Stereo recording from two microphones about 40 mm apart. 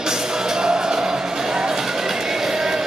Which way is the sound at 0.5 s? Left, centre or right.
Centre.